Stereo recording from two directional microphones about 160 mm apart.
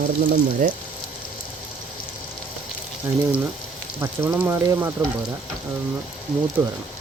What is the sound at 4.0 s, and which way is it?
Speech, 15° right (ahead or behind).